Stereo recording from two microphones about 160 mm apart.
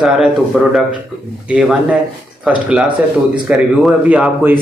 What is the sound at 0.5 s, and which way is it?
A man's voice, 5° right (ahead or behind).